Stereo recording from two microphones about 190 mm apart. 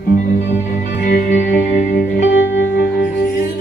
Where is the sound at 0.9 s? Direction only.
55° left (ahead or behind).